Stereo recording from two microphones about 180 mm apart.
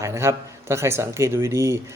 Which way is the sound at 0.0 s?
15° right (ahead or behind).